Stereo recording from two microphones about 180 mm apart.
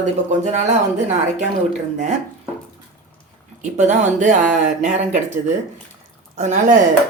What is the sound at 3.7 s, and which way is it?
Speech, 40° right (ahead or behind).